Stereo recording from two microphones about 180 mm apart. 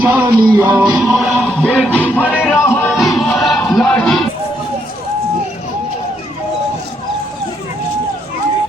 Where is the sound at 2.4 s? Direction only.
10° left (ahead or behind).